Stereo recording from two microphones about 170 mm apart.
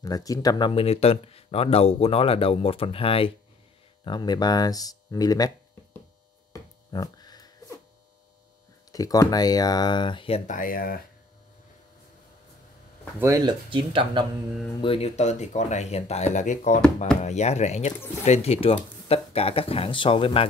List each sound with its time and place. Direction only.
0.0 s speech: 20° left (ahead or behind)
6.5 s a sound: 20° left (ahead or behind)
8.9 s speech: 20° left (ahead or behind)
10.5 s speech: 55° left (ahead or behind)
13.2 s speech: 20° right (ahead or behind)
13.7 s speech: 30° right (ahead or behind)
14.8 s speech: 35° left (ahead or behind)